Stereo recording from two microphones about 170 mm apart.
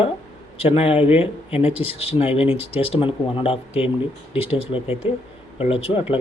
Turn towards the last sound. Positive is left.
turn(degrees=35)  # may be behind; listen again after turning